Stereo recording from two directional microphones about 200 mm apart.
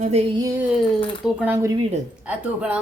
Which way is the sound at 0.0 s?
30° right (ahead or behind).